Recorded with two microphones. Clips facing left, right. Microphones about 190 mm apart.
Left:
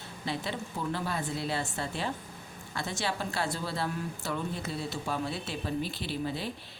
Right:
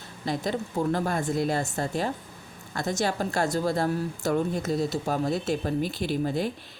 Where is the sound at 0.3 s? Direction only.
45° right (ahead or behind).